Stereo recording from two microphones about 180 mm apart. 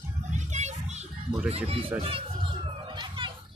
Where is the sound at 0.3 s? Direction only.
40° right (ahead or behind).